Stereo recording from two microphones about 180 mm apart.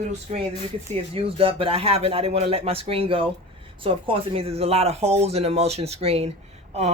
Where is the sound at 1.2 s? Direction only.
30° right (ahead or behind).